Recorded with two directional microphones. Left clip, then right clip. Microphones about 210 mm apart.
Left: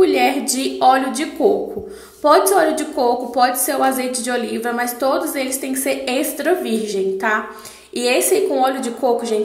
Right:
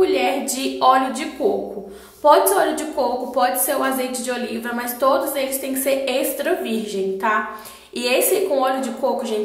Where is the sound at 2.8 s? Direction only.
15° left (ahead or behind).